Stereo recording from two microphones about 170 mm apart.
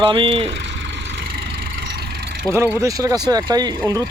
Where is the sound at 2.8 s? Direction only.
20° right (ahead or behind).